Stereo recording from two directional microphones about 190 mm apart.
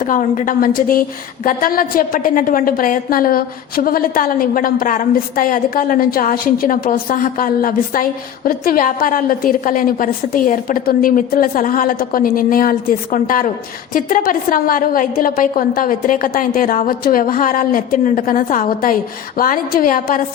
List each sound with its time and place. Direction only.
0.0 s a woman's voice: 45° left (ahead or behind)